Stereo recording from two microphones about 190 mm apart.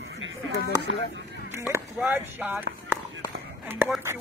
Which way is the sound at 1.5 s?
15° right (ahead or behind).